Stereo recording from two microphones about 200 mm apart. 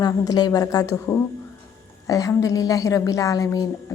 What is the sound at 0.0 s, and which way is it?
A woman's voice, 20° left (ahead or behind).